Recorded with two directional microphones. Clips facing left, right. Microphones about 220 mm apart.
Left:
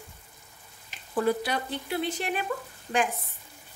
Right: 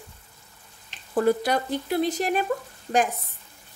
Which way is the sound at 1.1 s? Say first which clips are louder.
Right 5 dB; 45° right (ahead or behind).